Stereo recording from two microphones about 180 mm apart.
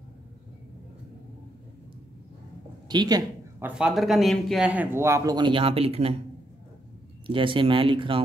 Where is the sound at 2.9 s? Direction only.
20° right (ahead or behind).